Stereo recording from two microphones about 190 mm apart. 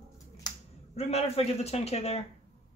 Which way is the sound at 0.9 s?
35° left (ahead or behind).